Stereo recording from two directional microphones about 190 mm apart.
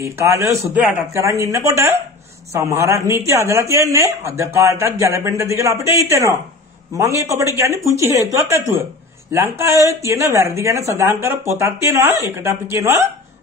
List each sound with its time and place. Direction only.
0.0 s a woman's voice: 15° right (ahead or behind)